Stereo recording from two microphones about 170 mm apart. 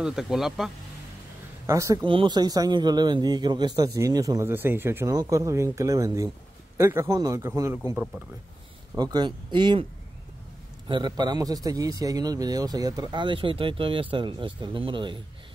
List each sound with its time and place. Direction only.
0.0 s speech: 5° right (ahead or behind)
1.7 s a man's voice: 20° right (ahead or behind)
10.9 s a man's voice: 25° right (ahead or behind)